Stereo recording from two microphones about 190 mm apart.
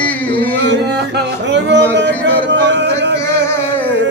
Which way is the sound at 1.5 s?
65° right (ahead or behind).